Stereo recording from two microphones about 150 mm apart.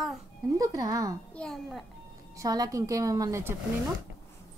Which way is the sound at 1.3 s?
5° left (ahead or behind).